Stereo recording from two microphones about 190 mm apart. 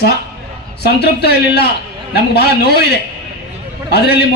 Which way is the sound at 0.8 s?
60° left (ahead or behind).